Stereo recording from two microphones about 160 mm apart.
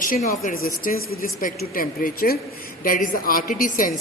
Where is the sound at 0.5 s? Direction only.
65° left (ahead or behind).